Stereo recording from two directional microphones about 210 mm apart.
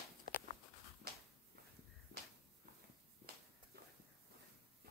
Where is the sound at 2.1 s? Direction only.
50° right (ahead or behind).